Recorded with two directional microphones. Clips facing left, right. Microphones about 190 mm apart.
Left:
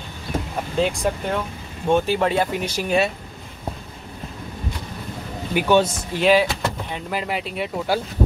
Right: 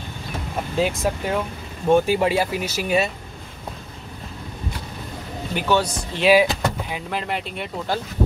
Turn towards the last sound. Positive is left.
turn(degrees=5)  # may be behind; listen again after turning